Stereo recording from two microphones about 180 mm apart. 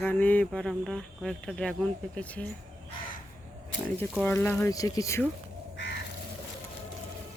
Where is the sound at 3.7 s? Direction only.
90° left.